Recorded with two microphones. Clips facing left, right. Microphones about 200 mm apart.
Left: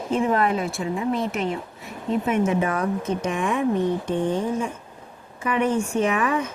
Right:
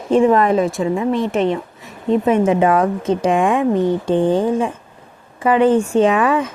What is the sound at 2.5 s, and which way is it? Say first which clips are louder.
A woman's voice: right 8 dB; 90° right.